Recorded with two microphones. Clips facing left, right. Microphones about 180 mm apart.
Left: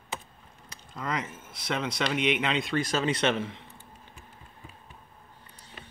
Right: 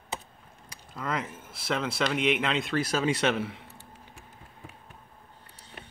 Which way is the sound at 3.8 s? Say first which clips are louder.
Right 1 dB; 75° right (ahead or behind).